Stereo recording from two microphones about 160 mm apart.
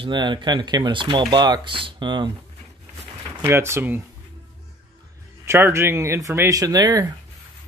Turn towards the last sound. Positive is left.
turn(degrees=-25)  # may be behind; listen again after turning